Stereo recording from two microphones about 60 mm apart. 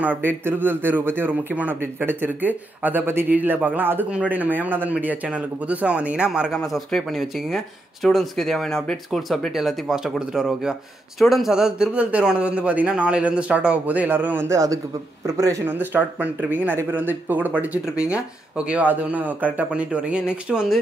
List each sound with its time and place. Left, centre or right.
0.0 s speech: right; by 6.5 s centre
6.9 s speech: centre
11.5 s speech: centre
13.8 s speech: right
14.5 s a man's voice: right
15.6 s speech: right
17.9 s speech: centre